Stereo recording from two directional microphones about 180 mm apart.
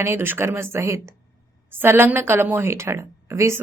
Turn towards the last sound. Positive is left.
turn(degrees=-15)  # may be behind; listen again after turning